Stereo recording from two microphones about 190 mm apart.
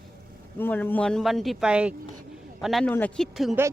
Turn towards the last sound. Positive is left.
turn(degrees=0)  # may be behind; listen again after turning